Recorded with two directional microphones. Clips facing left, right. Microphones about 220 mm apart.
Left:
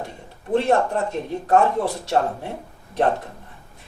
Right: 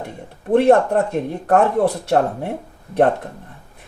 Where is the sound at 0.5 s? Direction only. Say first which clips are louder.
Right 6 dB; 55° right (ahead or behind).